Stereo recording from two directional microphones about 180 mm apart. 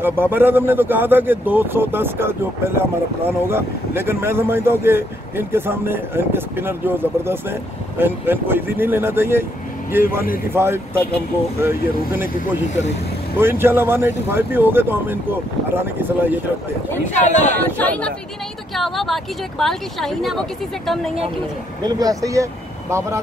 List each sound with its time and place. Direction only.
0.0 s speech: 10° right (ahead or behind)
10.5 s speech: 15° right (ahead or behind)
13.4 s speech: 10° right (ahead or behind)
17.3 s speech: 40° left (ahead or behind)
17.7 s speech: 10° left (ahead or behind)
21.8 s speech: 20° right (ahead or behind)